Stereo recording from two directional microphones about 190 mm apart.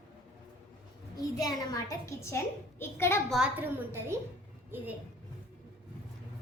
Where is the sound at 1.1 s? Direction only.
20° left (ahead or behind).